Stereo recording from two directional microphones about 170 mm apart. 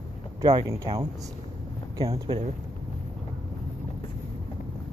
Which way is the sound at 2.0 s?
35° right (ahead or behind).